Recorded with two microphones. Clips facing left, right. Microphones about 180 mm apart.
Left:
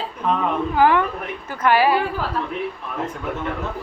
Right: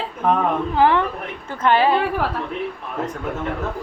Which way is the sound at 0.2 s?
50° right (ahead or behind).